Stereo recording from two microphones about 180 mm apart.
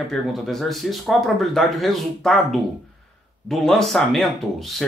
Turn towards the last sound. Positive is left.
turn(degrees=0)  # may be behind; listen again after turning